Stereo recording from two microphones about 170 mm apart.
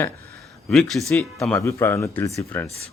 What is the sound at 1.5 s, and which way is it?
Speech, 15° left (ahead or behind).